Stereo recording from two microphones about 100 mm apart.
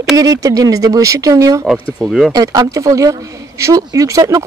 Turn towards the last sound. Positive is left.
turn(degrees=-35)  # may be behind; listen again after turning